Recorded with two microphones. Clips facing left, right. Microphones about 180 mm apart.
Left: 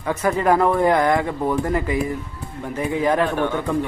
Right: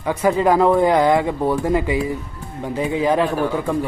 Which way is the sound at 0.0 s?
15° right (ahead or behind).